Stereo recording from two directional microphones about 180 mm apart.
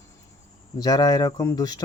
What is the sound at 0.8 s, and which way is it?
Speech, 20° left (ahead or behind).